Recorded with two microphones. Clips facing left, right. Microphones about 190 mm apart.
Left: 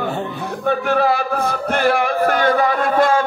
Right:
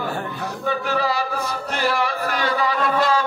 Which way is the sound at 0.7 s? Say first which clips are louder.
Left 6 dB; 55° left (ahead or behind).